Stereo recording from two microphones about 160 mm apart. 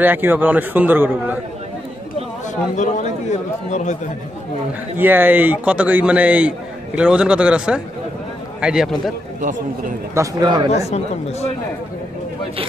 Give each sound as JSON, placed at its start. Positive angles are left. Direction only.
{"t": 0.0, "sound": "a man's voice", "side_deg": -10}
{"t": 2.7, "sound": "a man's voice", "side_deg": 45}
{"t": 4.9, "sound": "a man's voice", "side_deg": -10}
{"t": 9.4, "sound": "a man's voice", "side_deg": -50}
{"t": 10.1, "sound": "a man's voice", "side_deg": -25}
{"t": 10.7, "sound": "a man's voice", "side_deg": 45}